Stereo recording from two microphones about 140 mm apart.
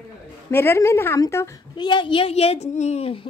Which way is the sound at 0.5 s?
15° left (ahead or behind).